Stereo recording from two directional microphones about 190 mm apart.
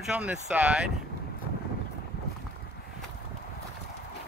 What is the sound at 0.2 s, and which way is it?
Speech, 5° right (ahead or behind).